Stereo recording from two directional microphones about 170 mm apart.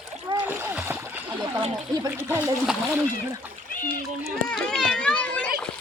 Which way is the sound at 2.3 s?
10° right (ahead or behind).